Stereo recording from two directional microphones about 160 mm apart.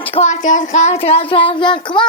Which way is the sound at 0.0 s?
40° left (ahead or behind).